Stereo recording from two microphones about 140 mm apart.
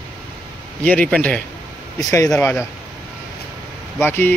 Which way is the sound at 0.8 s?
10° left (ahead or behind).